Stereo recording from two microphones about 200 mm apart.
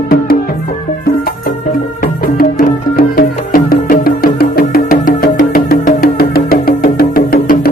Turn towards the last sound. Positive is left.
turn(degrees=45)  # may be behind; listen again after turning